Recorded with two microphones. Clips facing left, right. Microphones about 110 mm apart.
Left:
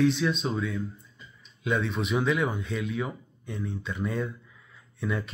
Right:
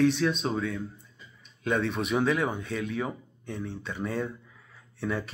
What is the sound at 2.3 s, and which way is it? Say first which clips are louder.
Speech: even; 35° right (ahead or behind).